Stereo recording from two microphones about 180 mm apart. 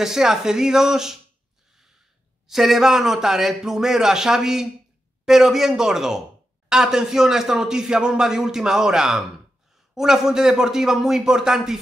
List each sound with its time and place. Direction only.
0.0 s speech: 5° right (ahead or behind)
2.4 s speech: centre (ahead or behind)